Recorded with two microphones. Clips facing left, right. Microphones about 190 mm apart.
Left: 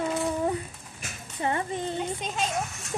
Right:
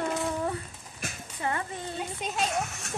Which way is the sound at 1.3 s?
25° left (ahead or behind).